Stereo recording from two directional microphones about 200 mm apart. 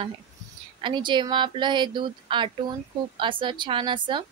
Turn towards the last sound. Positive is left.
turn(degrees=-25)  # may be behind; listen again after turning